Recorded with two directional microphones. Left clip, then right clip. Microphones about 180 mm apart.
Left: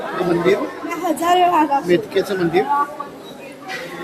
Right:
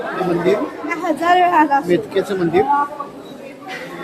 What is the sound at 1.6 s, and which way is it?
Speech, 5° left (ahead or behind).